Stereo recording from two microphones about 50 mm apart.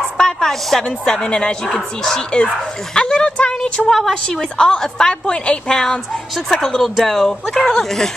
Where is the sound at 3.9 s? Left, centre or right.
Centre; by 5.8 s left.